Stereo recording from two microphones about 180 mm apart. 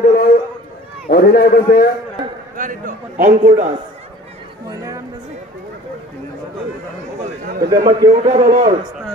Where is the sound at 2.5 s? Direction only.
45° right (ahead or behind).